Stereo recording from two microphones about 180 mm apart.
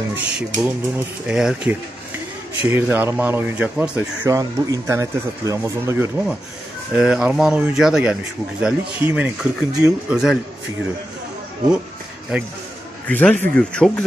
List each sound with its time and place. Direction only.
0.6 s speech: 10° right (ahead or behind)
2.6 s speech: 10° right (ahead or behind)
4.3 s speech: 20° right (ahead or behind); by 10.4 s 5° right (ahead or behind)
13.0 s speech: 10° left (ahead or behind)